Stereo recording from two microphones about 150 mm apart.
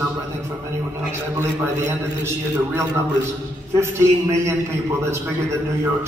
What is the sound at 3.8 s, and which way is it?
Speech, 15° right (ahead or behind).